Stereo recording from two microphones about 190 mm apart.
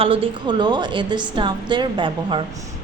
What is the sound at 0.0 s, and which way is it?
A woman's voice, 30° right (ahead or behind).